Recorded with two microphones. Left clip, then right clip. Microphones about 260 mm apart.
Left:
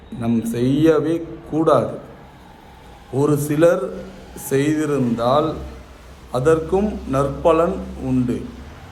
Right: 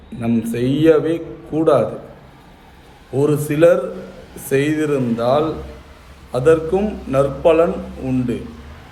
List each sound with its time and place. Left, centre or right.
0.2 s a man's voice: centre
3.2 s a man's voice: centre